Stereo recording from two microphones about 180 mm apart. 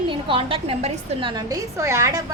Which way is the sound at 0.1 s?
30° right (ahead or behind).